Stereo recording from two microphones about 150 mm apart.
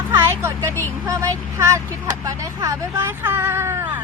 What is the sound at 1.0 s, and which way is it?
Speech, 20° right (ahead or behind).